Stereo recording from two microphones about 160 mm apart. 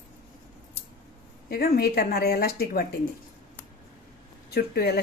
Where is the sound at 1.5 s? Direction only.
70° left (ahead or behind).